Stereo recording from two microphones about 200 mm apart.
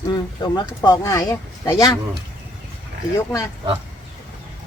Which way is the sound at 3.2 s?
15° left (ahead or behind).